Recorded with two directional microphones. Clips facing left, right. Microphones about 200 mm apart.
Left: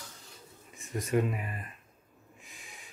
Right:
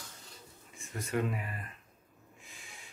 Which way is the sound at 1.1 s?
15° left (ahead or behind).